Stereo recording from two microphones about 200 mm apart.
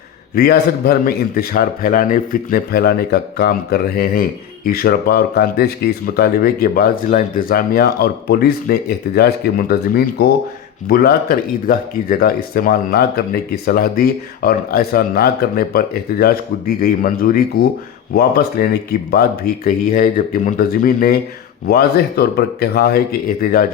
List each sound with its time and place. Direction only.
0.3 s a man's voice: 50° left (ahead or behind)